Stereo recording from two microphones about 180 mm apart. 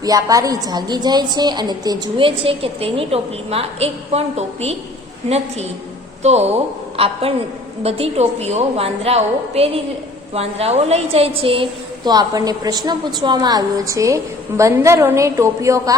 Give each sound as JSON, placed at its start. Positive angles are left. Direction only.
{"t": 0.0, "sound": "a woman's voice", "side_deg": -20}
{"t": 6.2, "sound": "a woman's voice", "side_deg": -35}